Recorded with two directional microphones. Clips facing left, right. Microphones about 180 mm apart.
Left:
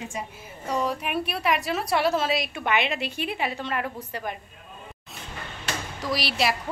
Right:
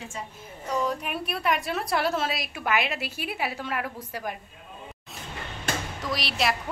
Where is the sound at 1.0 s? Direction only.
Centre (ahead or behind).